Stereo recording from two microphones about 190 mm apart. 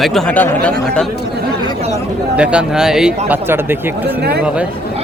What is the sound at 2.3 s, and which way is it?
Speech, 5° right (ahead or behind).